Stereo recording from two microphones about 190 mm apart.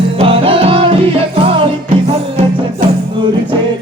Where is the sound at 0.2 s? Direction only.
30° right (ahead or behind).